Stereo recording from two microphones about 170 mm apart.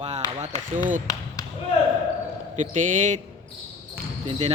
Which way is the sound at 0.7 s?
50° right (ahead or behind).